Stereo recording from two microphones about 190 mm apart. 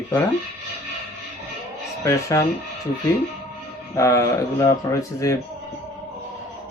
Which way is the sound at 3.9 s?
15° left (ahead or behind).